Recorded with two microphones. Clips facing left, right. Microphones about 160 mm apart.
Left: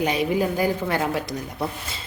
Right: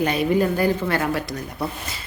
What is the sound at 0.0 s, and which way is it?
Speech, 15° left (ahead or behind).